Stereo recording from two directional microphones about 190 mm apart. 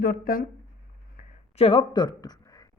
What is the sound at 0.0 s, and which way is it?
Speech, 50° left (ahead or behind).